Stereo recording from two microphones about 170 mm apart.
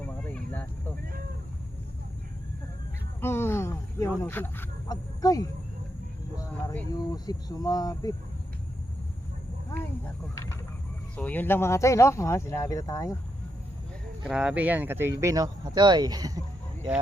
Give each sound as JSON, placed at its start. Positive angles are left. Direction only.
{"t": 0.0, "sound": "a sound", "side_deg": 10}
{"t": 3.2, "sound": "speech", "side_deg": 15}
{"t": 10.0, "sound": "speech", "side_deg": 15}
{"t": 14.3, "sound": "speech", "side_deg": -5}